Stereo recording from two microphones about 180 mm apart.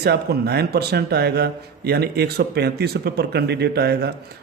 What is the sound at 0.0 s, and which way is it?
A man's voice, 65° right (ahead or behind).